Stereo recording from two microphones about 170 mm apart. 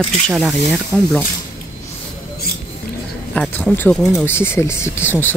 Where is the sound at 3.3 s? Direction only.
10° left (ahead or behind).